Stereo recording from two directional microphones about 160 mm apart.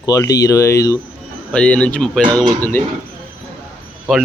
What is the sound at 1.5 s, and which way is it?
Speech, 5° left (ahead or behind).